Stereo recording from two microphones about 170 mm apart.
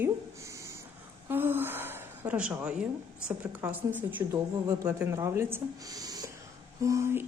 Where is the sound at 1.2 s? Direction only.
10° right (ahead or behind).